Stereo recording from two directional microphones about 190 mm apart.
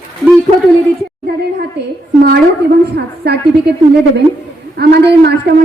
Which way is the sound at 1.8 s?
65° right (ahead or behind).